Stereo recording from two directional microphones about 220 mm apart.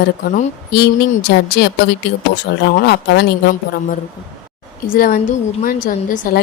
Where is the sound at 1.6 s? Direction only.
50° left (ahead or behind).